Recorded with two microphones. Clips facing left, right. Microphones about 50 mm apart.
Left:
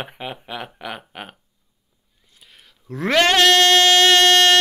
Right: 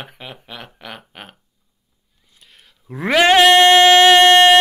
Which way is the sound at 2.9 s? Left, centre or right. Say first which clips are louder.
Right 4 dB; centre.